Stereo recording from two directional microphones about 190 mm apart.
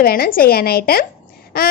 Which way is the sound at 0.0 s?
50° left (ahead or behind).